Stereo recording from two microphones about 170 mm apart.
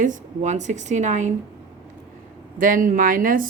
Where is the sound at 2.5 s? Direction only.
55° right (ahead or behind).